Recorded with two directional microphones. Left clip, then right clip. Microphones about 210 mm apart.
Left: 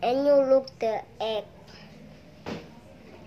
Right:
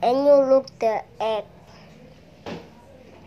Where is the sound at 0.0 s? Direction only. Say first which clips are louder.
Right 5 dB; 10° right (ahead or behind).